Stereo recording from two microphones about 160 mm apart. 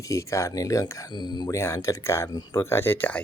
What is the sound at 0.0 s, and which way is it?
Speech, 20° left (ahead or behind).